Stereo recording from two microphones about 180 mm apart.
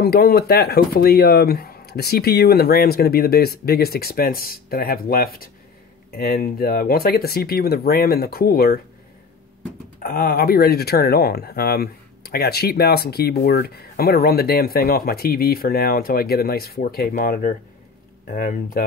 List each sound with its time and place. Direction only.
0.0 s speech: 60° left (ahead or behind)
10.0 s speech: 50° left (ahead or behind)